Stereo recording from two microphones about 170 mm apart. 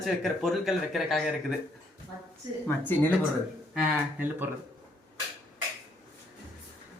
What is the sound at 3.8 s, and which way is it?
Speech, 10° right (ahead or behind).